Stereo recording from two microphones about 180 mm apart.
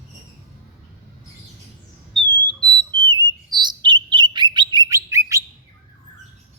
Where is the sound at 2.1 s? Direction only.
Centre (ahead or behind).